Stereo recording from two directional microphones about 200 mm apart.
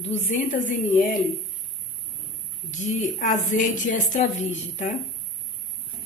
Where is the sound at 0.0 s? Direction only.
35° left (ahead or behind).